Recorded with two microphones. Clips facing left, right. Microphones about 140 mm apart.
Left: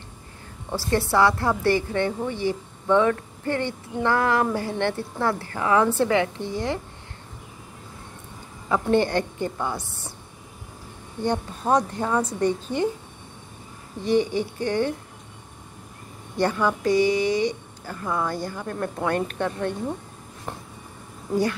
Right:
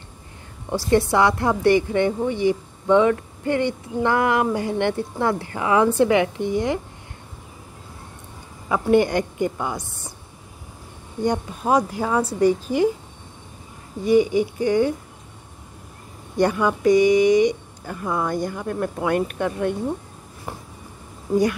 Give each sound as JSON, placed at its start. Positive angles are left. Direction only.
{"t": 0.7, "sound": "speech", "side_deg": -15}
{"t": 8.6, "sound": "speech", "side_deg": -10}
{"t": 11.2, "sound": "speech", "side_deg": -10}
{"t": 14.0, "sound": "speech", "side_deg": -10}
{"t": 16.3, "sound": "speech", "side_deg": -15}